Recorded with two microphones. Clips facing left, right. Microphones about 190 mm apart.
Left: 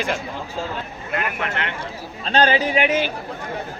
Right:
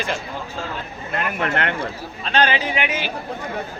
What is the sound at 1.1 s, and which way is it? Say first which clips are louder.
Speech: right 2 dB; 45° right (ahead or behind).